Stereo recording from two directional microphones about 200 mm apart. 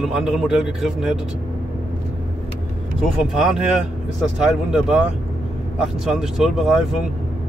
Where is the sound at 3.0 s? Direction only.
5° right (ahead or behind).